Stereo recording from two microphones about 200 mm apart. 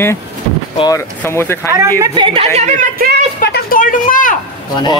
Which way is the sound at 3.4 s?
50° left (ahead or behind).